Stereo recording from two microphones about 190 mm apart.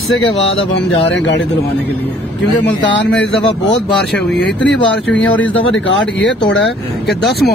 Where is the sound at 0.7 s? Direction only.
70° left (ahead or behind).